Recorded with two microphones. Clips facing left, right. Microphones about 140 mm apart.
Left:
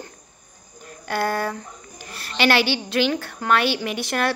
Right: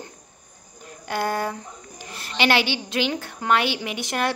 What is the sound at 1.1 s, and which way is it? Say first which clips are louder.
A woman's voice: left 1 dB; 20° right (ahead or behind).